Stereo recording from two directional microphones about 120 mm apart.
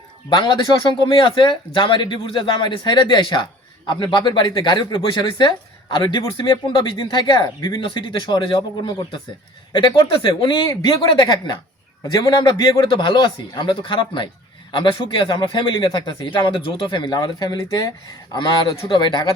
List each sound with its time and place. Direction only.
0.3 s speech: 35° left (ahead or behind)
18.3 s speech: 45° left (ahead or behind)